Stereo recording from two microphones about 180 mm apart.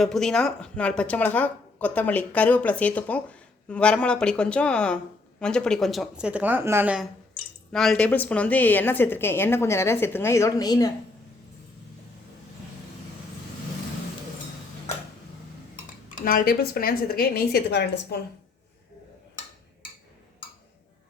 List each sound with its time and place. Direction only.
0.0 s speech: centre (ahead or behind); by 10.9 s 20° left (ahead or behind)
16.2 s a woman's voice: 50° left (ahead or behind); by 18.2 s 70° left (ahead or behind)